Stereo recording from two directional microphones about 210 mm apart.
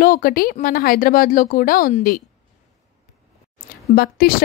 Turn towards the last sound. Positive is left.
turn(degrees=45)  # may be behind; listen again after turning